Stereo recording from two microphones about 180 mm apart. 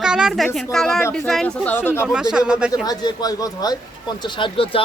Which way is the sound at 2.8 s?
20° left (ahead or behind).